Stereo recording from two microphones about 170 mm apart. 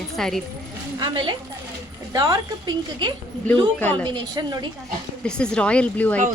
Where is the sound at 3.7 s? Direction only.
10° left (ahead or behind).